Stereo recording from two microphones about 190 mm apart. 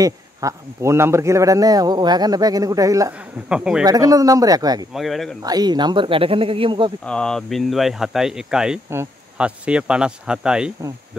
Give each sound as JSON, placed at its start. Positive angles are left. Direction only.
{"t": 0.0, "sound": "speech", "side_deg": -15}
{"t": 3.4, "sound": "speech", "side_deg": -5}
{"t": 3.8, "sound": "speech", "side_deg": -20}
{"t": 4.9, "sound": "speech", "side_deg": 0}
{"t": 5.4, "sound": "speech", "side_deg": -20}
{"t": 7.1, "sound": "speech", "side_deg": 5}